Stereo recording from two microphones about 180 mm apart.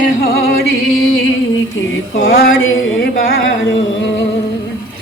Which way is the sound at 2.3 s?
75° left (ahead or behind).